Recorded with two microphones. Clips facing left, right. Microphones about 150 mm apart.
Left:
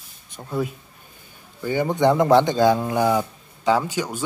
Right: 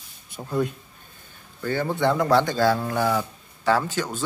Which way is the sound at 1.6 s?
15° left (ahead or behind).